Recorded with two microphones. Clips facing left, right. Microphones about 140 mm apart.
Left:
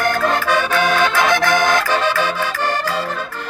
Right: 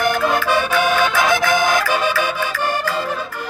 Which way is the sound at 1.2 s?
10° right (ahead or behind).